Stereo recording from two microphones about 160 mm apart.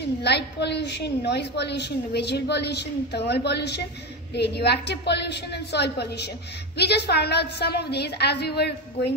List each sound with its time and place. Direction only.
0.2 s a woman's voice: 90° left